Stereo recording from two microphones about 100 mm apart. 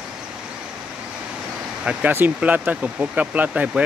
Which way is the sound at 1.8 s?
15° right (ahead or behind).